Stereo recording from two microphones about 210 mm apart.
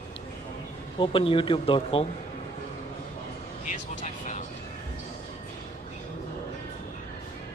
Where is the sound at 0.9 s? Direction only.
25° left (ahead or behind).